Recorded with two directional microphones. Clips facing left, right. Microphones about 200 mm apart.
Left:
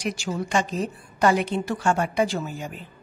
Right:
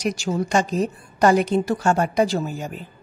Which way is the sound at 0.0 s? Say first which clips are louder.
Right 5 dB; 40° right (ahead or behind).